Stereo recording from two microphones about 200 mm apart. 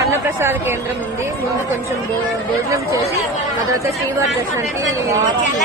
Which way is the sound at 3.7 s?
15° right (ahead or behind).